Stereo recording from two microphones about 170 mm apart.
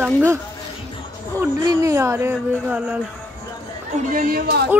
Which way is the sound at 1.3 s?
20° right (ahead or behind).